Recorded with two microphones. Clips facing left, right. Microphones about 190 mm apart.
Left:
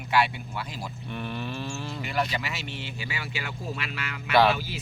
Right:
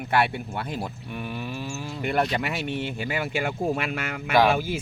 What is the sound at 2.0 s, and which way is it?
Speech, 55° right (ahead or behind).